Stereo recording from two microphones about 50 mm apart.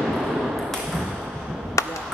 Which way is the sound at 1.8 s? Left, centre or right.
Left.